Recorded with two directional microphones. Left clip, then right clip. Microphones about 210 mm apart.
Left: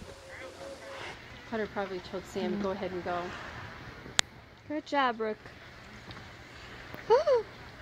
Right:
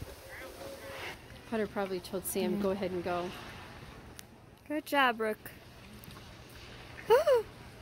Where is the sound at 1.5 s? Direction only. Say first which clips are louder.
Even; 50° right (ahead or behind).